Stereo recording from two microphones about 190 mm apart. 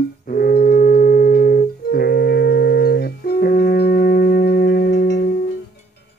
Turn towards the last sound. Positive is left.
turn(degrees=60)  # may be behind; listen again after turning